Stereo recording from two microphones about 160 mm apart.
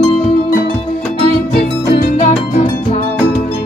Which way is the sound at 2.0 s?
50° left (ahead or behind).